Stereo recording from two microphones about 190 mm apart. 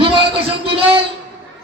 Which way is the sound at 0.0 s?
30° right (ahead or behind).